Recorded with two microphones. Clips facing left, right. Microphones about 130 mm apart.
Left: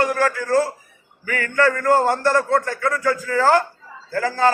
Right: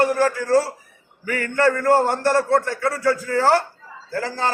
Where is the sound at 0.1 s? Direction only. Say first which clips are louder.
Right 1 dB; 30° right (ahead or behind).